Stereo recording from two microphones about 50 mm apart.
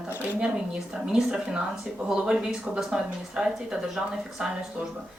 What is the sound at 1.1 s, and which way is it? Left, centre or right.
A woman's voice, centre.